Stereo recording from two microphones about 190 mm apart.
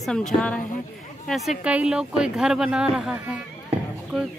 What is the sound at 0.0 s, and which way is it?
Speech, 5° left (ahead or behind).